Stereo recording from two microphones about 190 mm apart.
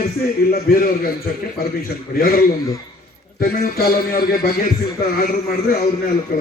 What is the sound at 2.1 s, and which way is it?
A man's voice, 50° left (ahead or behind).